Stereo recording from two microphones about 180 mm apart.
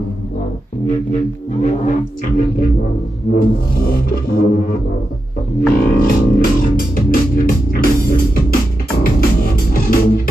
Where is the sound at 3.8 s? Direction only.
55° left (ahead or behind).